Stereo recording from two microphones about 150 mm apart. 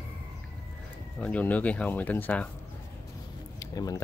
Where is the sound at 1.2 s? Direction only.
10° left (ahead or behind).